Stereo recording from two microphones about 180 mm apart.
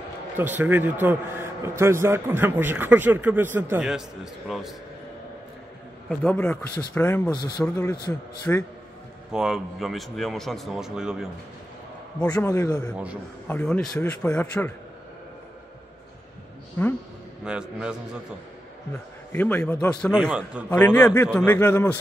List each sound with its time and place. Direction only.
0.4 s a man's voice: 10° right (ahead or behind)
6.0 s a man's voice: 5° left (ahead or behind)
7.3 s speech: 25° left (ahead or behind)
7.6 s a man's voice: 10° left (ahead or behind)
9.3 s a man's voice: 5° right (ahead or behind)
12.4 s a man's voice: 15° left (ahead or behind)
12.9 s a man's voice: 5° right (ahead or behind)
13.5 s a man's voice: 5° left (ahead or behind)
16.8 s a man's voice: 10° left (ahead or behind)
17.5 s a man's voice: 5° right (ahead or behind)
19.3 s a man's voice: 10° left (ahead or behind)
20.7 s a man's voice: 10° left (ahead or behind)